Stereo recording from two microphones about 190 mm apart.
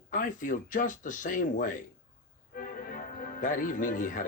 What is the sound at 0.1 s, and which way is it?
Speech, 45° left (ahead or behind).